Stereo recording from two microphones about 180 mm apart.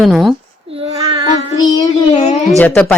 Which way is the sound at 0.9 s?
35° right (ahead or behind).